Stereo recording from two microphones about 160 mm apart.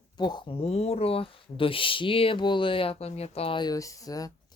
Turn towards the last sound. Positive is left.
turn(degrees=20)  # may be behind; listen again after turning